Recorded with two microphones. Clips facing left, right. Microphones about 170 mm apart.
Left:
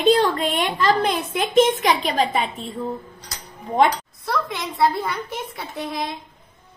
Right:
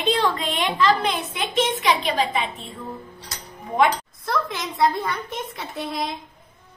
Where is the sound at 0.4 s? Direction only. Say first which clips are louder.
Left 1 dB; 45° left (ahead or behind).